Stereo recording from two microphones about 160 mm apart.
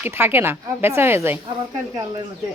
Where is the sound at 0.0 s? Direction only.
15° right (ahead or behind).